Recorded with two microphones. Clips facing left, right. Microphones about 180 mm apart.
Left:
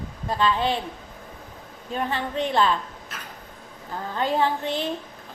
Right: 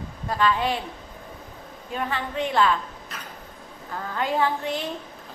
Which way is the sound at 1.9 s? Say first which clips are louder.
Left 2 dB; 30° left (ahead or behind).